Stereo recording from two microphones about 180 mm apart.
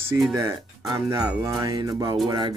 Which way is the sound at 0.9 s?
20° right (ahead or behind).